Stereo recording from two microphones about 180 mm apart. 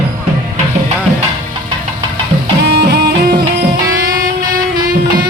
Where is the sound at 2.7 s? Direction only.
65° right (ahead or behind).